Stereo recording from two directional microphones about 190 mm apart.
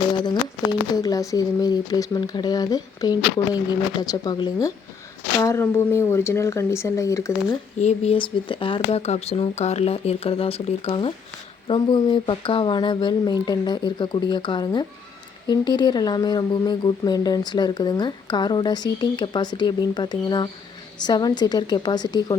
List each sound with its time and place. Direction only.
0.9 s speech: 20° left (ahead or behind)
7.8 s speech: 35° left (ahead or behind)